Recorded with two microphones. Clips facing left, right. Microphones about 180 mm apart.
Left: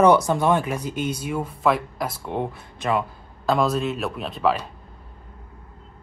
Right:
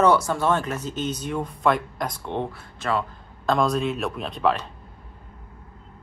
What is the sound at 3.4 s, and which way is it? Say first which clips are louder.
Speech: left 1 dB; 5° left (ahead or behind).